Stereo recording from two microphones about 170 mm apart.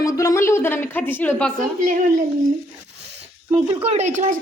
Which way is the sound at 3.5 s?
35° right (ahead or behind).